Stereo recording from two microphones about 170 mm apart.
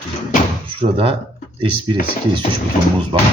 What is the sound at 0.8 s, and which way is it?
Speech, 35° right (ahead or behind).